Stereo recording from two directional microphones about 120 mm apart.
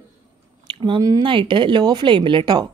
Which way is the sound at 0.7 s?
45° right (ahead or behind).